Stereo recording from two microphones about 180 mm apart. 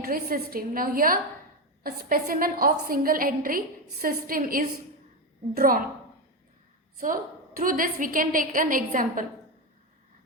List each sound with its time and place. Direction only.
0.0 s a woman's voice: 55° right (ahead or behind)
7.0 s a woman's voice: 50° right (ahead or behind)